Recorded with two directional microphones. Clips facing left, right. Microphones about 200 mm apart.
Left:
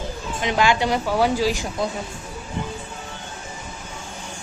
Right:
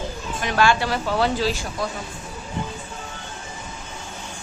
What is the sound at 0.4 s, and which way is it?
A woman's voice, 15° left (ahead or behind).